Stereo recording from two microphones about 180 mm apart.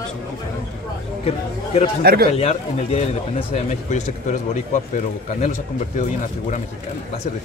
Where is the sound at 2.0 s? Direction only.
60° right (ahead or behind).